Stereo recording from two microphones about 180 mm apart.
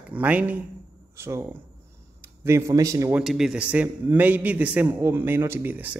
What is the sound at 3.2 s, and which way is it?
Speech, centre (ahead or behind).